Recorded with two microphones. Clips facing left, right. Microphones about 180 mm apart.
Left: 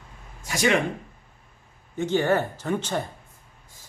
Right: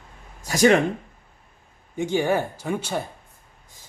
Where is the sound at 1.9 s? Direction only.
10° right (ahead or behind).